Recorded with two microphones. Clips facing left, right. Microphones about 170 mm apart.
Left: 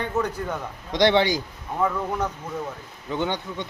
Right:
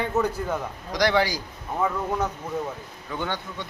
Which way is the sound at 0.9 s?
25° left (ahead or behind).